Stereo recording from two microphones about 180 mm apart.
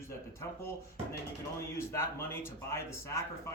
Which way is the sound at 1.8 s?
15° left (ahead or behind).